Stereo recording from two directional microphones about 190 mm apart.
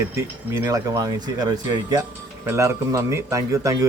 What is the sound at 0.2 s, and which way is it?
Speech, 15° right (ahead or behind).